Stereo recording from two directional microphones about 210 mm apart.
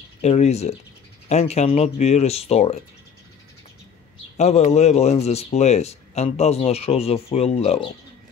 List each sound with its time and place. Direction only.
0.2 s a man's voice: 30° left (ahead or behind)
4.4 s a man's voice: 30° left (ahead or behind)